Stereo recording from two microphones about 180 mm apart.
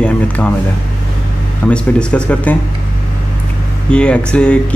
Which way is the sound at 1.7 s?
5° left (ahead or behind).